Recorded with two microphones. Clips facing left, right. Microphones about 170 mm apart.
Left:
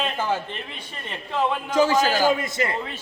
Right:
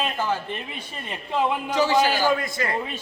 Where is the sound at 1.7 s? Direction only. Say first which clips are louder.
Left 2 dB; 45° left (ahead or behind).